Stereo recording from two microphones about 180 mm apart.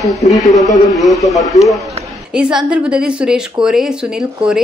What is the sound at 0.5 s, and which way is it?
Speech, 20° left (ahead or behind).